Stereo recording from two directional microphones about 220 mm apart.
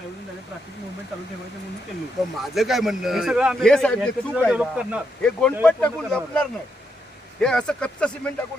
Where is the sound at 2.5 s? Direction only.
Centre (ahead or behind).